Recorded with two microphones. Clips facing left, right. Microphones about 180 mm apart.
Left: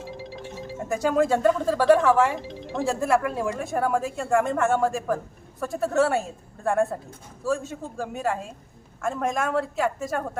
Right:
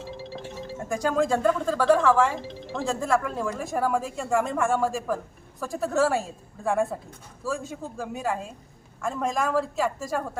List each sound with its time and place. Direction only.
0.0 s music: 15° left (ahead or behind)
0.8 s speech: 5° left (ahead or behind)